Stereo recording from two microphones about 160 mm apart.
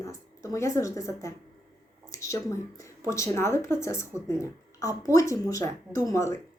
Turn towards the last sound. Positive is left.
turn(degrees=20)  # may be behind; listen again after turning